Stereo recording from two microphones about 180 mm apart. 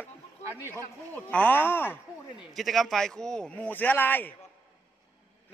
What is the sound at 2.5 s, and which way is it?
A man's voice, centre (ahead or behind).